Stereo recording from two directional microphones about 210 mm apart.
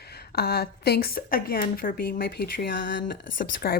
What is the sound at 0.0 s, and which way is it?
A woman's voice, 50° left (ahead or behind).